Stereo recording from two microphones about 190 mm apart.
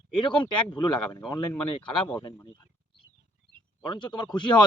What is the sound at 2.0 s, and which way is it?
Speech, 15° left (ahead or behind).